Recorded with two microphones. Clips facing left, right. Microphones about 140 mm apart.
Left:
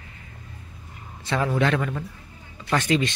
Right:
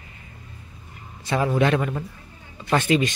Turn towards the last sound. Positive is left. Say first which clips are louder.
# right 2 dB
turn(degrees=-15)  # may be behind; listen again after turning